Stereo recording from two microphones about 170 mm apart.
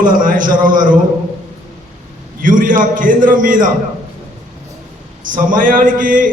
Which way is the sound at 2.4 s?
50° right (ahead or behind).